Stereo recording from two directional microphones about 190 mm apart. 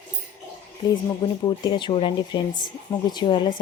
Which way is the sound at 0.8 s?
20° left (ahead or behind).